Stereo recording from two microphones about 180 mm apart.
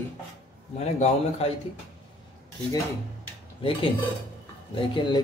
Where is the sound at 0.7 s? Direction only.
35° left (ahead or behind).